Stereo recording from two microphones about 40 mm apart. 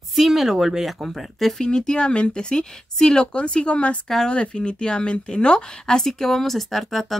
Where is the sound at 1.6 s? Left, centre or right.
Centre.